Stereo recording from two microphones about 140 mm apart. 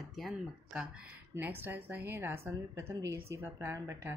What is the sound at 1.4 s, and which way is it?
A woman's voice, 15° right (ahead or behind).